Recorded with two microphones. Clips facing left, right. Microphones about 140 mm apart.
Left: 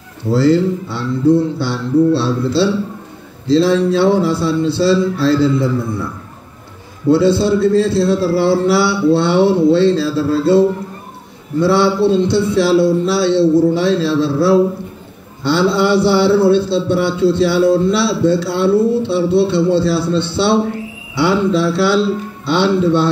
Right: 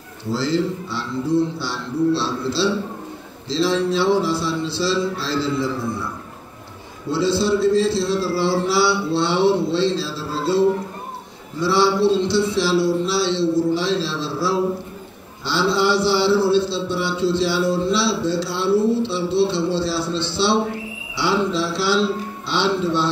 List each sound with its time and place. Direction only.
0.3 s a man's voice: 60° left (ahead or behind)
7.1 s a man's voice: 55° left (ahead or behind)
11.6 s a man's voice: 55° left (ahead or behind)
15.7 s a man's voice: 55° left (ahead or behind)